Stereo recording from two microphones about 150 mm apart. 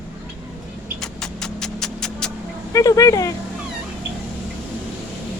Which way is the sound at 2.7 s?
20° left (ahead or behind).